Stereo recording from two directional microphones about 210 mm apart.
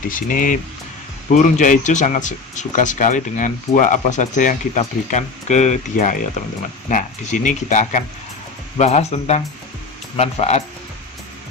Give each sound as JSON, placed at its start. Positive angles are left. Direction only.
{"t": 0.1, "sound": "speech", "side_deg": 40}